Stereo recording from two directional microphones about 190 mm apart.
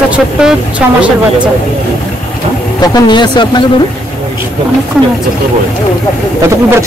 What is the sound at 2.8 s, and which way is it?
Speech, 25° left (ahead or behind).